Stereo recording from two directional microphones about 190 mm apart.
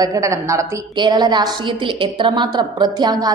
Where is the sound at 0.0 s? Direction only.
15° right (ahead or behind).